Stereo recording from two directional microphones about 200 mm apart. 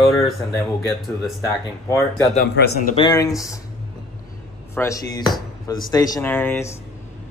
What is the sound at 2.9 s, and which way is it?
Speech, 20° left (ahead or behind).